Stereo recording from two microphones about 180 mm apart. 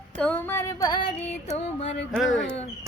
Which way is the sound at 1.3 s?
40° left (ahead or behind).